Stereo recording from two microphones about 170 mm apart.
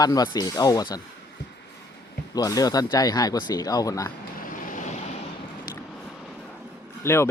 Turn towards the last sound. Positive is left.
turn(degrees=15)  # may be behind; listen again after turning